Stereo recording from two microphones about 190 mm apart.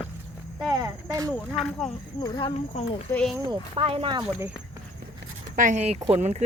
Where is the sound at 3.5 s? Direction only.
30° right (ahead or behind).